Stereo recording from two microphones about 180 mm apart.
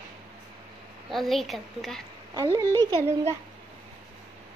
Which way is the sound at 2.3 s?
20° right (ahead or behind).